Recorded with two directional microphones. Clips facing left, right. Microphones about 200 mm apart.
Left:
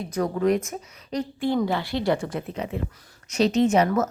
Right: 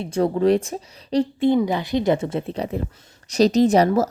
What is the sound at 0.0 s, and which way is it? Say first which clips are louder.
A woman's voice: right 4 dB; 30° right (ahead or behind).